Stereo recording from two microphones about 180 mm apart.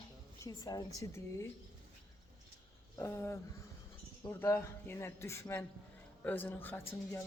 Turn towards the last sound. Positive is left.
turn(degrees=10)  # may be behind; listen again after turning